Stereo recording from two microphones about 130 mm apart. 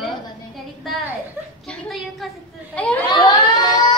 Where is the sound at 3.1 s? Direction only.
35° left (ahead or behind).